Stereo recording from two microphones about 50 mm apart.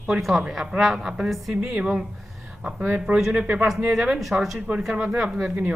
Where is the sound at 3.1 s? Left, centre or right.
Centre.